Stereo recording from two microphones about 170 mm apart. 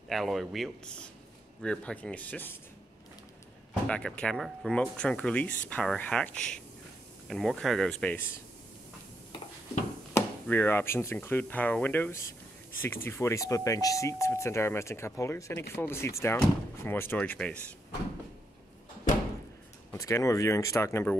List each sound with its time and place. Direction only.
0.1 s speech: centre (ahead or behind)
3.8 s speech: 5° left (ahead or behind)
10.1 s speech: 10° left (ahead or behind)
19.9 s speech: 15° left (ahead or behind)